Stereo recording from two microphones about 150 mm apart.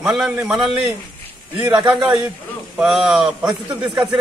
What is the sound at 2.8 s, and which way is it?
Speech, 5° right (ahead or behind).